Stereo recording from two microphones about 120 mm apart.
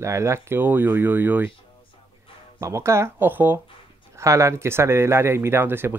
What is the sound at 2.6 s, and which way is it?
Speech, 25° right (ahead or behind).